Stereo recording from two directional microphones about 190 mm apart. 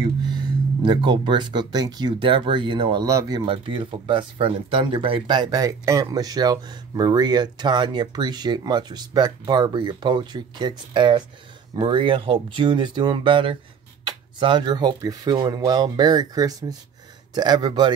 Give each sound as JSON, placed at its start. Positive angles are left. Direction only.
{"t": 0.0, "sound": "speech", "side_deg": -25}